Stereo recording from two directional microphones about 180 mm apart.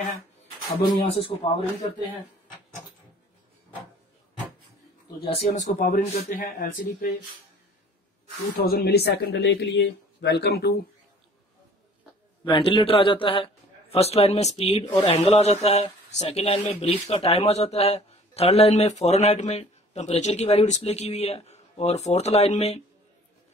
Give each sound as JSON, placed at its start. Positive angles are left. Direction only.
{"t": 1.2, "sound": "a man's voice", "side_deg": 35}
{"t": 5.2, "sound": "a man's voice", "side_deg": 35}
{"t": 5.8, "sound": "speech", "side_deg": 50}
{"t": 8.5, "sound": "speech", "side_deg": 55}
{"t": 12.4, "sound": "a man's voice", "side_deg": 30}